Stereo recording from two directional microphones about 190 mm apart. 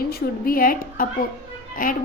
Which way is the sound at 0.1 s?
50° left (ahead or behind).